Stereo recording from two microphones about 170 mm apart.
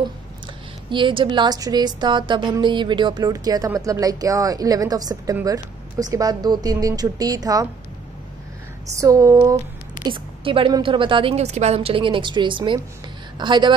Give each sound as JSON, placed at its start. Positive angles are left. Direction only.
{"t": 0.8, "sound": "a woman's voice", "side_deg": -30}
{"t": 8.9, "sound": "a woman's voice", "side_deg": -20}
{"t": 10.0, "sound": "a woman's voice", "side_deg": -30}